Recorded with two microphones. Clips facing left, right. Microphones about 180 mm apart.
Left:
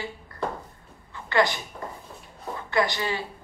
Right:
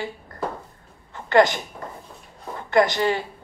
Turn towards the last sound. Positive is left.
turn(degrees=-45)  # may be behind; listen again after turning